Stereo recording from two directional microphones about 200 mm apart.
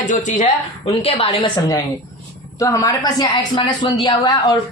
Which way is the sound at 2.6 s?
15° left (ahead or behind).